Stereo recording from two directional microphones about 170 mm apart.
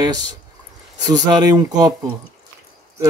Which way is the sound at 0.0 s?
25° right (ahead or behind).